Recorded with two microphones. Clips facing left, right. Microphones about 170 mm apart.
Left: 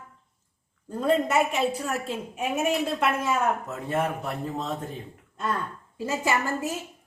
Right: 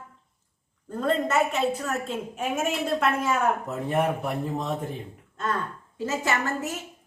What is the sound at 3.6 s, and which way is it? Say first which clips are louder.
Speech: right 2 dB; 15° right (ahead or behind).